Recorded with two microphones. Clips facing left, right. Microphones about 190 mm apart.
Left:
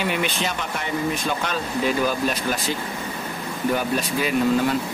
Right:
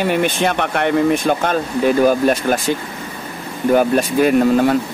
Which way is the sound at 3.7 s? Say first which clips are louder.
Right 10 dB; 50° right (ahead or behind).